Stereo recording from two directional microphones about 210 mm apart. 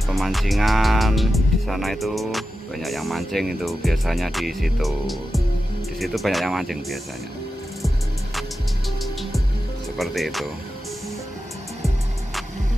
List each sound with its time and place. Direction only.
0.1 s speech: centre (ahead or behind)
9.0 s music: centre (ahead or behind)
9.9 s speech: centre (ahead or behind)